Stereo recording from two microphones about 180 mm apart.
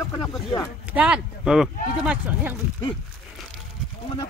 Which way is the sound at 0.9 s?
5° right (ahead or behind).